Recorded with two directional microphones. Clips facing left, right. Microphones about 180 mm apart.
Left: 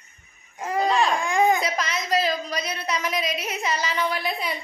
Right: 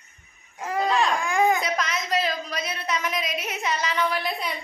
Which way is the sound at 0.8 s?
Centre (ahead or behind).